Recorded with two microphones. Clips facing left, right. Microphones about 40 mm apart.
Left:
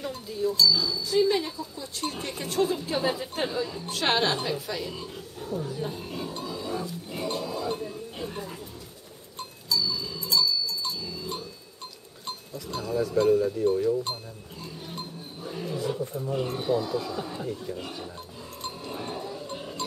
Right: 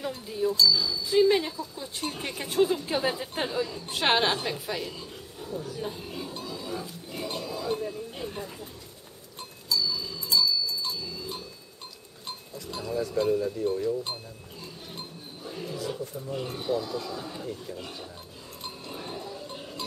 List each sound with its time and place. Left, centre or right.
0.3 s speech: centre
0.6 s speech: centre
1.0 s a woman's voice: centre
3.9 s a woman's voice: centre
4.9 s speech: centre
5.8 s a sound: centre
9.4 s livestock: centre
12.3 s speech: centre
14.6 s a sound: centre
16.2 s speech: centre
18.6 s cowbell: centre